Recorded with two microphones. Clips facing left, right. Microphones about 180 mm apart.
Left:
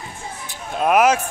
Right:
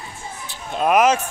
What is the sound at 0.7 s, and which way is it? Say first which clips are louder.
Vehicle: even; 5° left (ahead or behind).